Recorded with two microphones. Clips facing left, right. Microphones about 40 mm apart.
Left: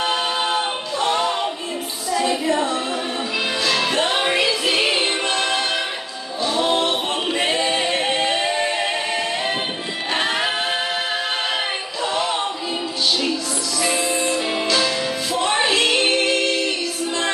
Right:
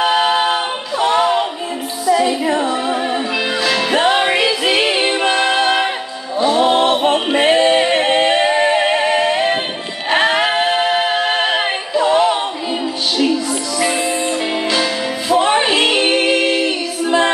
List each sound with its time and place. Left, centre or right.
0.0 s a capella: centre
2.0 s music: centre
2.5 s a capella: centre
3.6 s music: centre
5.2 s music: right
7.1 s a capella: right
13.8 s music: centre
15.4 s female singing: right